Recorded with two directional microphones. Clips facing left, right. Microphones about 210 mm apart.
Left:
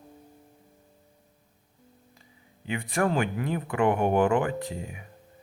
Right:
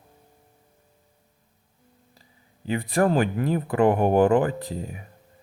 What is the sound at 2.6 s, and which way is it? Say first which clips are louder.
Speech: right 5 dB; 35° right (ahead or behind).